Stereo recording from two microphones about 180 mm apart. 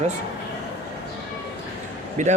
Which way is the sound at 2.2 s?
45° right (ahead or behind).